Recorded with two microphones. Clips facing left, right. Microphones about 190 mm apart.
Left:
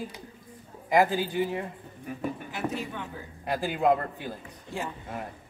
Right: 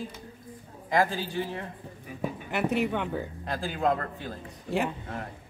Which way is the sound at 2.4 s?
65° right (ahead or behind).